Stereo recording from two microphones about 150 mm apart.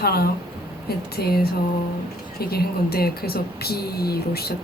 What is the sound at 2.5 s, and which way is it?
Speech, 90° left.